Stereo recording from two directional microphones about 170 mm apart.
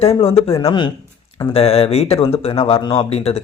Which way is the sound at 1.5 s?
35° left (ahead or behind).